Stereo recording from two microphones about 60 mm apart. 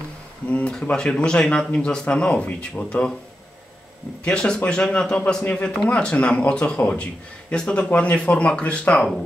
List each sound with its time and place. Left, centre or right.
0.5 s speech: left
4.2 s speech: centre